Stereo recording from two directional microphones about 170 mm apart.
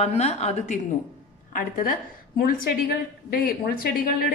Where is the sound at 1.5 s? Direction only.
55° left (ahead or behind).